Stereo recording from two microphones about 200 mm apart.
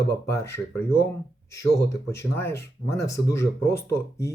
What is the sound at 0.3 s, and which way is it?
Speech, 15° left (ahead or behind).